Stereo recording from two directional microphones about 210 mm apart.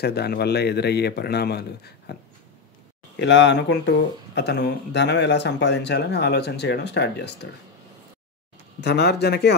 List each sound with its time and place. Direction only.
0.0 s speech: 50° left (ahead or behind)
3.2 s speech: 55° left (ahead or behind)
8.8 s speech: 55° left (ahead or behind)